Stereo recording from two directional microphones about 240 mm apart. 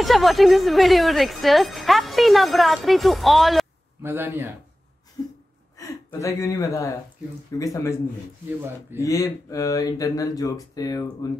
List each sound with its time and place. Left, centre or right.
0.0 s speech: centre
5.2 s a sound: centre
5.8 s speech: centre
8.5 s speech: centre
9.0 s speech: centre